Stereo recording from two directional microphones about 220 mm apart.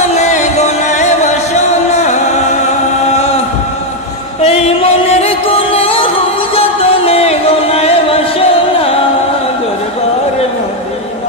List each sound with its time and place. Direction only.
0.2 s music: 30° left (ahead or behind)
4.4 s music: 25° left (ahead or behind)